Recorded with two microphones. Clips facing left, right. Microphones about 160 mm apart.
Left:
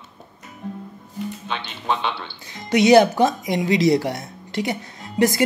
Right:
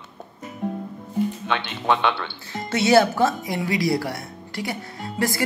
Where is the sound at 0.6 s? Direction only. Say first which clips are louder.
Right 5 dB; 65° right (ahead or behind).